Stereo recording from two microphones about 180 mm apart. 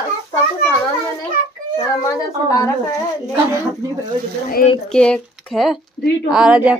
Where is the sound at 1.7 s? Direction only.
20° left (ahead or behind).